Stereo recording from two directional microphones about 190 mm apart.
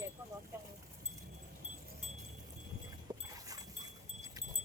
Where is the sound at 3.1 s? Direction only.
20° right (ahead or behind).